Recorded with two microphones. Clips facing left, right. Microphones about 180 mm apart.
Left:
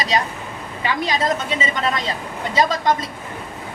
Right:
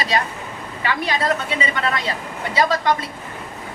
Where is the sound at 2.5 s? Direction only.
20° left (ahead or behind).